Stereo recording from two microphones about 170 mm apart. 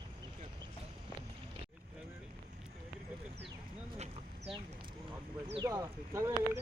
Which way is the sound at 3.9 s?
40° right (ahead or behind).